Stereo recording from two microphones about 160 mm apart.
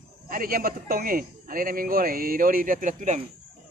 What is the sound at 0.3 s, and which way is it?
A man's voice, 65° right (ahead or behind).